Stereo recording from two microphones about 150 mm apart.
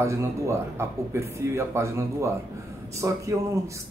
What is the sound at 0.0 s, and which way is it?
Speech, 20° right (ahead or behind).